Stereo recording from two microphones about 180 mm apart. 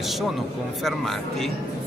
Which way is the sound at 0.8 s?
Centre (ahead or behind).